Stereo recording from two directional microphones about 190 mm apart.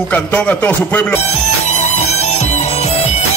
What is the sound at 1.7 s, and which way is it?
Music, 35° left (ahead or behind).